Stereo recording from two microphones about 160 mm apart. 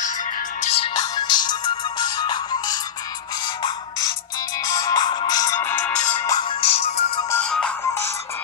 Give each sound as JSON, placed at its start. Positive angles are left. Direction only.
{"t": 0.6, "sound": "music", "side_deg": 40}
{"t": 0.9, "sound": "music", "side_deg": 25}
{"t": 4.7, "sound": "music", "side_deg": 25}
{"t": 6.6, "sound": "music", "side_deg": 40}
{"t": 7.2, "sound": "music", "side_deg": 10}